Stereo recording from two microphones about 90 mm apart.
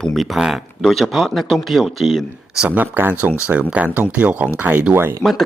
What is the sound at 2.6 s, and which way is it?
Speech, 20° right (ahead or behind).